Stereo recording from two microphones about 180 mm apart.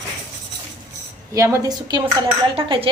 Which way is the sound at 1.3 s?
20° right (ahead or behind).